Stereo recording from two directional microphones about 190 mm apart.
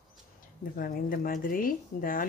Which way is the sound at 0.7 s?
50° left (ahead or behind).